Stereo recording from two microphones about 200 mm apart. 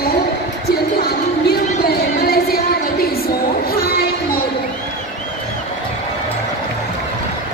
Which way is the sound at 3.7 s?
50° left (ahead or behind).